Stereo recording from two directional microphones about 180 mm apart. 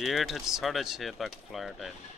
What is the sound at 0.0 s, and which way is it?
Speech, centre (ahead or behind).